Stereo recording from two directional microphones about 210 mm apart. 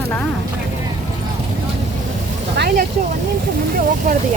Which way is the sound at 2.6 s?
45° right (ahead or behind).